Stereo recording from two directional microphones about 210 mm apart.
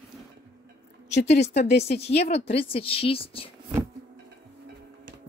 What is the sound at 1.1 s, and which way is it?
A woman's voice, 30° left (ahead or behind).